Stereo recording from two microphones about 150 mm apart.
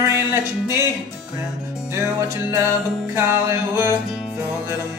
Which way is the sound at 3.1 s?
15° right (ahead or behind).